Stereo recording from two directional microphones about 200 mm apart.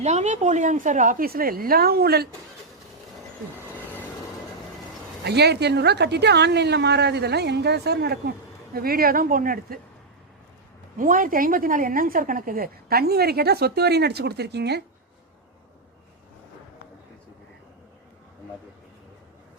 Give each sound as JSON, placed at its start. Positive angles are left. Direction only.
{"t": 0.0, "sound": "a woman's voice", "side_deg": -35}
{"t": 5.2, "sound": "a woman's voice", "side_deg": -55}
{"t": 10.9, "sound": "a woman's voice", "side_deg": -40}